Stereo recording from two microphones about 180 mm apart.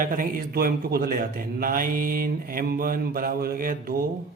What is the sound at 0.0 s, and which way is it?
Speech, 50° right (ahead or behind).